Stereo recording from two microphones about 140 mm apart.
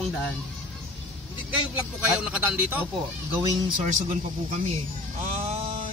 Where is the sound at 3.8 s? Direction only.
60° right (ahead or behind).